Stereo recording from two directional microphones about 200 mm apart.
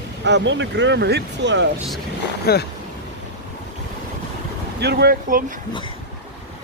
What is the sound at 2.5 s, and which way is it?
Speech, 50° left (ahead or behind).